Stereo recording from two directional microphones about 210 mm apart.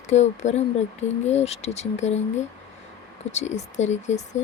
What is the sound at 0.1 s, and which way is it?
Speech, 35° left (ahead or behind).